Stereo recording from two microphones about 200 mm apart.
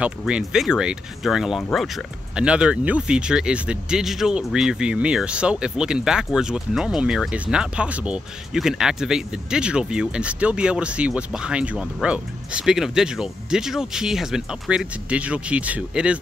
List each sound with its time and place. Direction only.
0.0 s speech: 5° right (ahead or behind)